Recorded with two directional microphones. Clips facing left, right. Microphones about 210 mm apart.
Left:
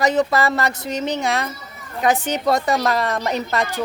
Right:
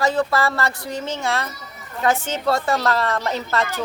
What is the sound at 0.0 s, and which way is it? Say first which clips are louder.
A woman's voice: left 2 dB; 20° left (ahead or behind).